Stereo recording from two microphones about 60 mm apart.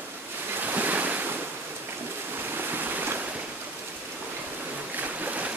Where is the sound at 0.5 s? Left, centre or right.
Right.